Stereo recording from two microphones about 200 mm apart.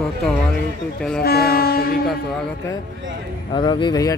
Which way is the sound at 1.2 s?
50° left (ahead or behind).